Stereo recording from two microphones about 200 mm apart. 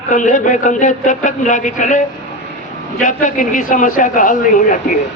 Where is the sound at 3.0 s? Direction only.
40° left (ahead or behind).